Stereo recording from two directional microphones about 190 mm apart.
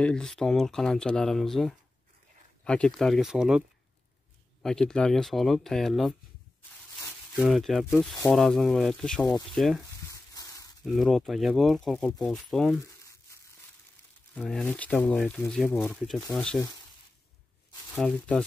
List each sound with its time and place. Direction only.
0.0 s speech: 5° left (ahead or behind)
4.6 s speech: 5° left (ahead or behind)
7.3 s speech: centre (ahead or behind)
10.3 s a sound: 20° left (ahead or behind)
10.9 s speech: centre (ahead or behind)
14.3 s speech: centre (ahead or behind)
17.9 s speech: 5° left (ahead or behind)